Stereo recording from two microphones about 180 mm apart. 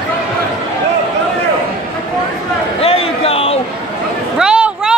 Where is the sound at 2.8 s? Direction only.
30° left (ahead or behind).